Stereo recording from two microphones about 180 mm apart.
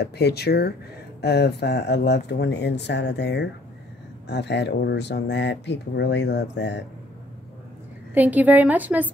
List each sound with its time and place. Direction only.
0.0 s speech: 65° left (ahead or behind)
8.1 s a woman's voice: 10° right (ahead or behind)